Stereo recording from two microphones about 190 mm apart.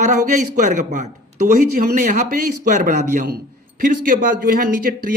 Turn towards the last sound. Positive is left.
turn(degrees=-50)  # may be behind; listen again after turning